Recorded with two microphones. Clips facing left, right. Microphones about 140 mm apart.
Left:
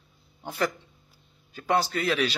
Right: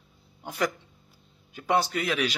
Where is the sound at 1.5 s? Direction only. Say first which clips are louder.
Even; 20° right (ahead or behind).